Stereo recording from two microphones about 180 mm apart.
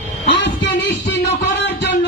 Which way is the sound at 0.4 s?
80° left.